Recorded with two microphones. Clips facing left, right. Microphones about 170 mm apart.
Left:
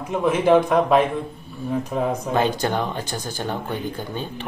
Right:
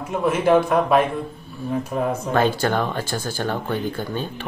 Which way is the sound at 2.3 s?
15° left (ahead or behind).